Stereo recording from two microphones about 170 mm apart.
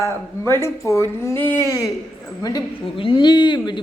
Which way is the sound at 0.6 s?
15° left (ahead or behind).